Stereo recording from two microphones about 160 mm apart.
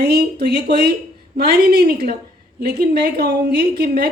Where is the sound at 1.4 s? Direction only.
75° right (ahead or behind).